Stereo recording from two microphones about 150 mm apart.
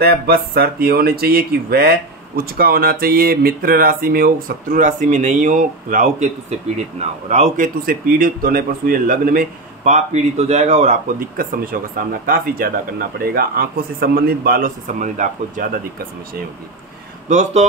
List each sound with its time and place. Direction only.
0.0 s a man's voice: 90° right; by 11.0 s 50° right (ahead or behind)
11.7 s speech: 80° right
13.2 s speech: 90° right; by 15.6 s 55° right (ahead or behind)
17.3 s speech: 50° right (ahead or behind)